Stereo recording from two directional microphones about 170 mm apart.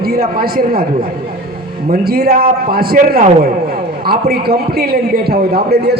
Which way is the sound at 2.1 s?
65° right (ahead or behind).